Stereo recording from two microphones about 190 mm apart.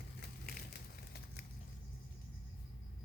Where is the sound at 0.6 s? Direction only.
55° left (ahead or behind).